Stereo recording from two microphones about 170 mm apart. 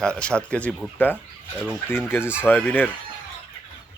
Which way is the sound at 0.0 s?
5° left (ahead or behind).